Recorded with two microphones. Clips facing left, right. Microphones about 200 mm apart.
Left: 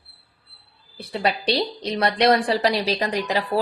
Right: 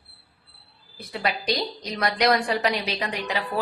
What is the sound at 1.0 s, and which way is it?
A woman's voice, 30° left (ahead or behind).